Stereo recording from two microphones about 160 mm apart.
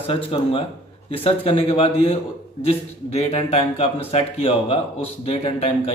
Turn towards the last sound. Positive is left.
turn(degrees=35)  # may be behind; listen again after turning